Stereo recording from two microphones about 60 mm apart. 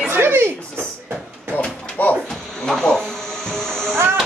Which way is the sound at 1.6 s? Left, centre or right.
Left.